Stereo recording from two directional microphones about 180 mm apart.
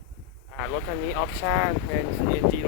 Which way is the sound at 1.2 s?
5° left (ahead or behind).